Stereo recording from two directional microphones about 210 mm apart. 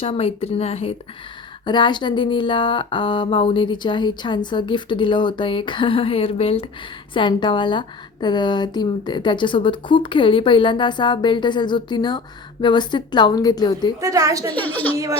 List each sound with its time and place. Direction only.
0.0 s a woman's voice: 25° left (ahead or behind)
14.0 s a woman's voice: 15° right (ahead or behind)
14.5 s a woman's voice: 10° left (ahead or behind)